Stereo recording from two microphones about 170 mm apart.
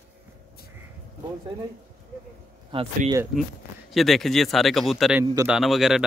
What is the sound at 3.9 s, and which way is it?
Speech, centre (ahead or behind).